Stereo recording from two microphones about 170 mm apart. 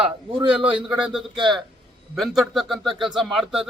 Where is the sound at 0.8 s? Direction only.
5° right (ahead or behind).